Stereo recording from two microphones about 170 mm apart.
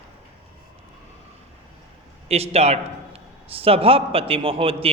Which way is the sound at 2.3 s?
35° right (ahead or behind).